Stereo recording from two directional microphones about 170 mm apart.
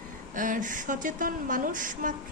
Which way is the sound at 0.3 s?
50° right (ahead or behind).